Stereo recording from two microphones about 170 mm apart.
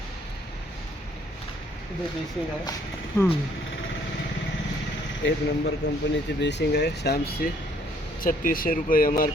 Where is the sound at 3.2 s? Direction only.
15° left (ahead or behind).